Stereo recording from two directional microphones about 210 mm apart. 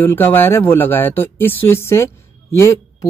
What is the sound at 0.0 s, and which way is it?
Speech, 10° left (ahead or behind).